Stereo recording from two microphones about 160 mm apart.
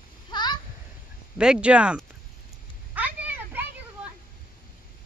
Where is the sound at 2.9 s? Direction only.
10° right (ahead or behind).